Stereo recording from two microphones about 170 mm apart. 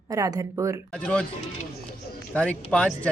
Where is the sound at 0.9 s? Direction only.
5° left (ahead or behind).